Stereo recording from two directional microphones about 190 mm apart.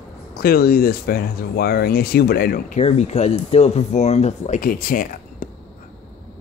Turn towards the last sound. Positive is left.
turn(degrees=45)  # may be behind; listen again after turning